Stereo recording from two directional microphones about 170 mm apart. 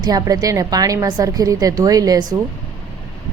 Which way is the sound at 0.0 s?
25° right (ahead or behind).